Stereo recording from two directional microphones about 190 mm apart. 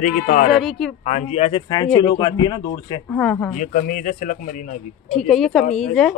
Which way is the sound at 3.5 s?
45° left (ahead or behind).